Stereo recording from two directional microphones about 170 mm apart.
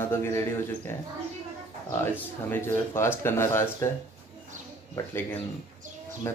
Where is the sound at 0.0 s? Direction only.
15° left (ahead or behind).